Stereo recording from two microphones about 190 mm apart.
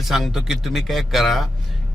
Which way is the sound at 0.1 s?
Centre (ahead or behind).